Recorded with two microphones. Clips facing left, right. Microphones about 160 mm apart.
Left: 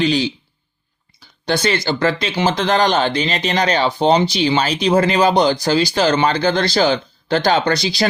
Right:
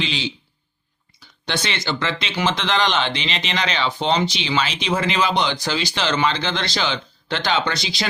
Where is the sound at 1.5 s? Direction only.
40° left (ahead or behind).